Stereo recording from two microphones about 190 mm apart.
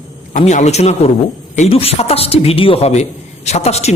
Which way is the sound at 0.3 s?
40° left (ahead or behind).